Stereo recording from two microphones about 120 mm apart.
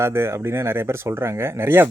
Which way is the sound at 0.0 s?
20° right (ahead or behind).